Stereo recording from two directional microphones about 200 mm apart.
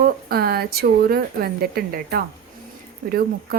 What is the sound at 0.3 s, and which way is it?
Speech, 50° right (ahead or behind).